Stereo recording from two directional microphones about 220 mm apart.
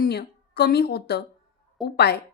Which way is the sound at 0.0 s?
45° left (ahead or behind).